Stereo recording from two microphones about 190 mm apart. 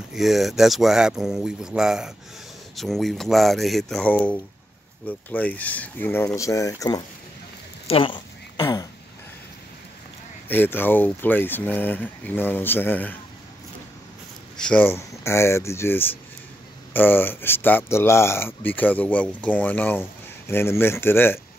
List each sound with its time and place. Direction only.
0.1 s speech: centre (ahead or behind); by 7.0 s 15° left (ahead or behind)
7.8 s a sound: 30° left (ahead or behind)
10.5 s speech: 10° left (ahead or behind)
14.6 s speech: 5° left (ahead or behind)